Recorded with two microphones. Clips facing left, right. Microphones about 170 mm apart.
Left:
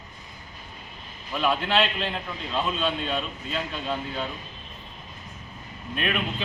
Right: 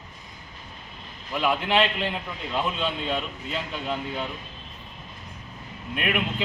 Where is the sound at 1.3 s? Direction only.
15° right (ahead or behind).